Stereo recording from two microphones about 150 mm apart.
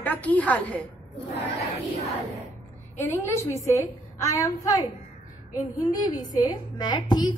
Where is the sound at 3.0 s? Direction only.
20° left (ahead or behind).